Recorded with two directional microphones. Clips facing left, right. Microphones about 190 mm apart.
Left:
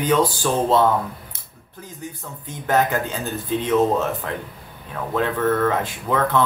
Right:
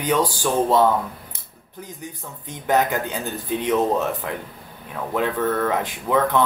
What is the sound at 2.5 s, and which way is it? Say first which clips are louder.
Speech: even; 15° right (ahead or behind).